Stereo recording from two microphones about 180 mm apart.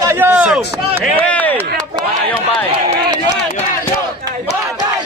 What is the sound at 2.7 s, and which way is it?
Run, 30° right (ahead or behind).